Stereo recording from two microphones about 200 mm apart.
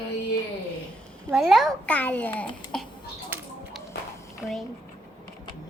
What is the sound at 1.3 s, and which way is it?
A child's voice, centre (ahead or behind).